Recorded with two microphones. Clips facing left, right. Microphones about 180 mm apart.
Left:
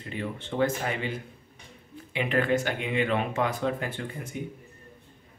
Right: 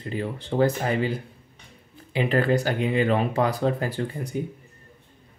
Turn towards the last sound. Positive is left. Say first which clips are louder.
# right 6 dB
turn(degrees=-35)  # may be behind; listen again after turning